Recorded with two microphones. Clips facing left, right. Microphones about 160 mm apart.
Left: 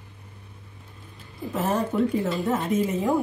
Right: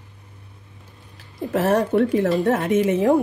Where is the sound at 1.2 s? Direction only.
90° right.